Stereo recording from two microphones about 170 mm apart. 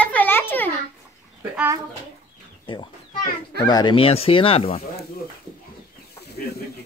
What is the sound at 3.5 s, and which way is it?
Speech, 25° left (ahead or behind).